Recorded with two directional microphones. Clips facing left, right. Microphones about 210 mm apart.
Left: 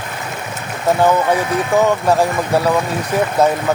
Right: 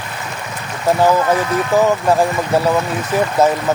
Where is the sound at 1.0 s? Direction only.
Centre (ahead or behind).